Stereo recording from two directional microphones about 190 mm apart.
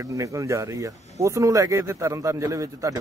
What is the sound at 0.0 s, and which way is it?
Speech, 15° right (ahead or behind).